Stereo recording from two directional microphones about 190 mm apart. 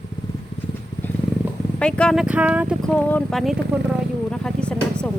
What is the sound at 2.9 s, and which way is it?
Speech, 5° left (ahead or behind).